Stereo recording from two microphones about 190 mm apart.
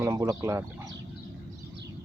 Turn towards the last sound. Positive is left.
turn(degrees=-15)  # may be behind; listen again after turning